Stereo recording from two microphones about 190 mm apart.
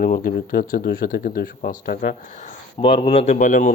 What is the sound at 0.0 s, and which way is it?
Speech, 50° left (ahead or behind).